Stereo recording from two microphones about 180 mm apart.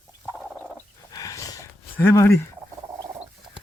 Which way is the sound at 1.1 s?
20° left (ahead or behind).